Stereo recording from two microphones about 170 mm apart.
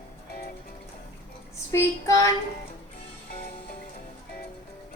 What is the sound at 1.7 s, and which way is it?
Child singing, 15° left (ahead or behind).